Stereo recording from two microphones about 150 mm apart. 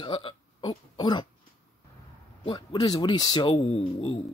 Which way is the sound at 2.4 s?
30° left (ahead or behind).